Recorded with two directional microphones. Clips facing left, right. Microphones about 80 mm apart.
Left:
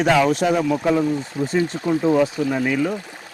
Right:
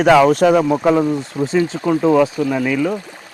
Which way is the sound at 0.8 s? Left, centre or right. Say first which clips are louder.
Right 4 dB; right.